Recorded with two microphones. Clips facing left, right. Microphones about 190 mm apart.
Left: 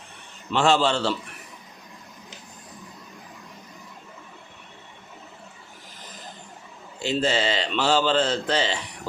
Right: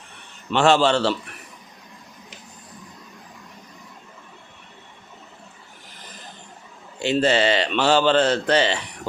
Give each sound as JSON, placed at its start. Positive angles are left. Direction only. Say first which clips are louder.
{"t": 0.5, "sound": "speech", "louder": "right 3 dB", "side_deg": -70}
{"t": 7.0, "sound": "speech", "louder": "right 5 dB", "side_deg": -65}